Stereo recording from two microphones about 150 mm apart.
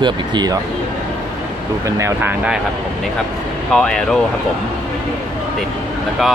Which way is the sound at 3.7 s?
5° left (ahead or behind).